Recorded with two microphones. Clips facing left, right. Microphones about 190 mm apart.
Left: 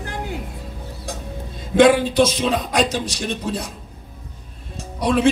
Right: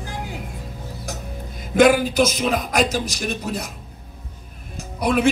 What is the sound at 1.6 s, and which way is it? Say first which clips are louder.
Speech: left 1 dB; 30° left (ahead or behind).